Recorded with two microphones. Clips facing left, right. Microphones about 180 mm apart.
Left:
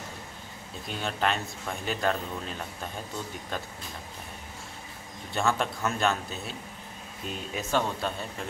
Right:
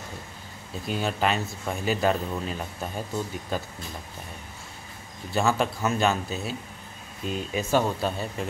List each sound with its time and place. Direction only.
0.8 s speech: 5° right (ahead or behind)
5.3 s speech: 5° right (ahead or behind)